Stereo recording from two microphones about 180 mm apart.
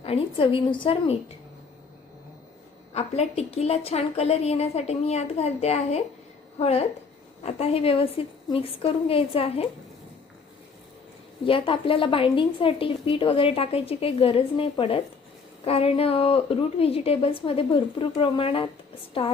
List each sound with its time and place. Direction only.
0.0 s a woman's voice: 30° left (ahead or behind)
2.9 s a woman's voice: 35° left (ahead or behind)
11.4 s a woman's voice: 30° left (ahead or behind)